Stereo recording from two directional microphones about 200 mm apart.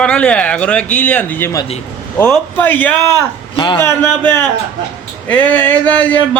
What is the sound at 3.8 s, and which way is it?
Speech, 10° left (ahead or behind).